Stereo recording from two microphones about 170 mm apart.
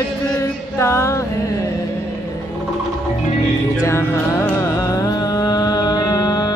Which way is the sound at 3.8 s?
15° left (ahead or behind).